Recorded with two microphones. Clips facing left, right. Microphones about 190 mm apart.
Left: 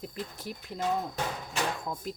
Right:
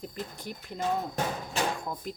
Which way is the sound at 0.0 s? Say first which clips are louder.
Even; centre (ahead or behind).